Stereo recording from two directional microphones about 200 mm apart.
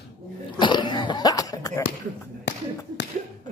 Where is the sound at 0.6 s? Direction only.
25° left (ahead or behind).